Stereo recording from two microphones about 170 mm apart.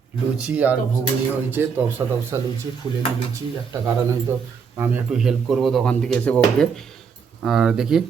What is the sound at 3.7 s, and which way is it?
Speech, 20° right (ahead or behind).